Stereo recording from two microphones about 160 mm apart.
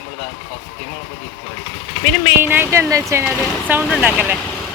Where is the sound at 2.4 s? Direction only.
15° right (ahead or behind).